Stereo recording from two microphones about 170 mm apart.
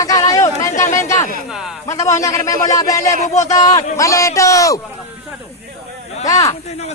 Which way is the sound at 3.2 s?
45° left (ahead or behind).